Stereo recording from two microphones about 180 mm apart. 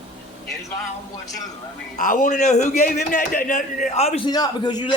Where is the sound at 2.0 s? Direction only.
45° left (ahead or behind).